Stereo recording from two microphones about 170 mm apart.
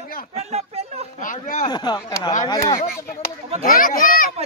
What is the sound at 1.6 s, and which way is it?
Speech, 25° left (ahead or behind).